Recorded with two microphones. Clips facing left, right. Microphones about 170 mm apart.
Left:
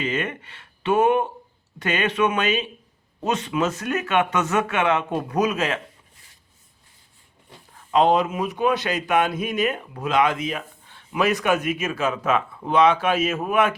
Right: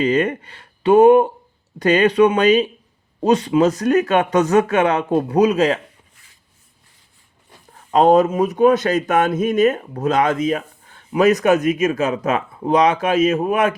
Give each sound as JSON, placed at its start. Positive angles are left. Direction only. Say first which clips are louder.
{"t": 0.0, "sound": "speech", "louder": "right 9 dB", "side_deg": -40}
{"t": 7.7, "sound": "speech", "louder": "right 5 dB", "side_deg": -40}